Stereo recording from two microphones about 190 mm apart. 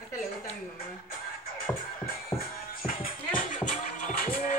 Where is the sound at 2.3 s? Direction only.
45° left (ahead or behind).